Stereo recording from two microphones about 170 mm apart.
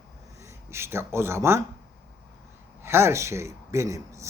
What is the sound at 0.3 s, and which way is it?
Speech, 15° right (ahead or behind).